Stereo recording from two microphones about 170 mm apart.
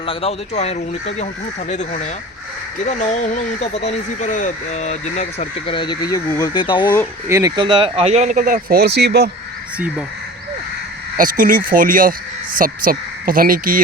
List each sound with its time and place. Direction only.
0.0 s speech: 35° left (ahead or behind)
5.7 s speech: 25° left (ahead or behind)
7.3 s speech: 20° right (ahead or behind); by 9.3 s 75° right (ahead or behind)
11.2 s speech: 55° right (ahead or behind)